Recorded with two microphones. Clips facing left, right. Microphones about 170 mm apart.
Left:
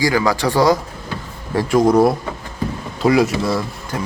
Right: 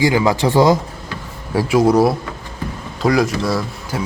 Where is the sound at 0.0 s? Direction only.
20° right (ahead or behind).